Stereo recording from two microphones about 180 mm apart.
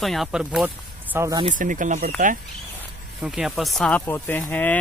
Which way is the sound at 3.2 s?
5° right (ahead or behind).